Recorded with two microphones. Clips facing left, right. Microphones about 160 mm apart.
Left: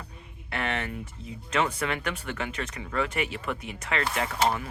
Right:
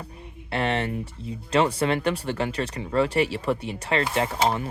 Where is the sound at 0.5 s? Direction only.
30° right (ahead or behind).